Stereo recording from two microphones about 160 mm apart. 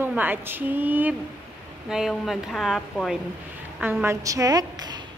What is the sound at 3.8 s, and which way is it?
A woman's voice, 10° right (ahead or behind).